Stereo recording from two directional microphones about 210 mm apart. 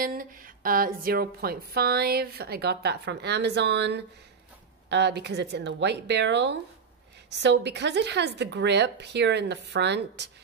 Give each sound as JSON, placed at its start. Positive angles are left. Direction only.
{"t": 0.0, "sound": "a woman's voice", "side_deg": -40}